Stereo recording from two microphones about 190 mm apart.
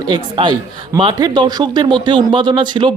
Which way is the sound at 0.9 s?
25° right (ahead or behind).